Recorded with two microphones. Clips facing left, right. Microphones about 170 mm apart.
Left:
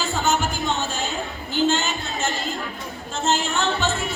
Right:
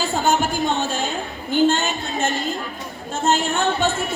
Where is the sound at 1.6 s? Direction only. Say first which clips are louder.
Right 2 dB; 55° right (ahead or behind).